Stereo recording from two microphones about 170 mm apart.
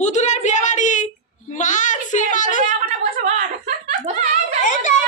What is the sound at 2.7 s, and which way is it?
Speech, 45° right (ahead or behind).